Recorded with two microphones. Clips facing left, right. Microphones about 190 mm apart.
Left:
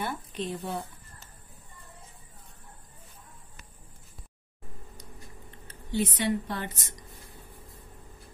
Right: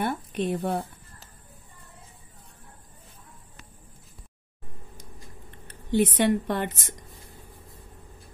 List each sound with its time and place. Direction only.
0.0 s a woman's voice: 60° right (ahead or behind)
5.9 s a woman's voice: 60° right (ahead or behind)